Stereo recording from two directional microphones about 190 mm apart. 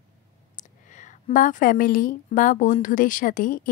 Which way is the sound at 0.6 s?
40° left (ahead or behind).